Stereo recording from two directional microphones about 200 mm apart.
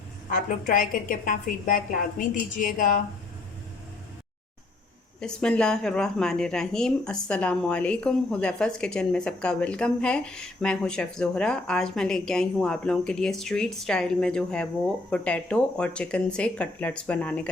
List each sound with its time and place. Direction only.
0.3 s a woman's voice: 45° left (ahead or behind)
5.2 s speech: 5° left (ahead or behind)